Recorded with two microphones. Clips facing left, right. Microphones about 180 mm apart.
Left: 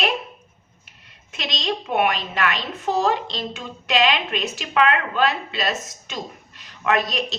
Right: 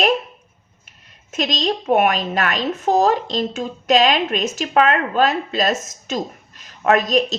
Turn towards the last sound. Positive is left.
turn(degrees=-45)  # may be behind; listen again after turning